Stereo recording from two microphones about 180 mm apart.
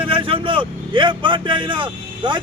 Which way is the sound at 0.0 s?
30° right (ahead or behind).